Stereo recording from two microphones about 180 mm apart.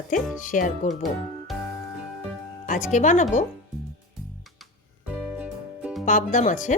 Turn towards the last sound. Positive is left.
turn(degrees=45)  # may be behind; listen again after turning